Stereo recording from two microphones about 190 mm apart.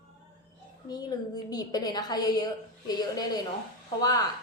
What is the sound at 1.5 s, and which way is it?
A woman's voice, 20° left (ahead or behind).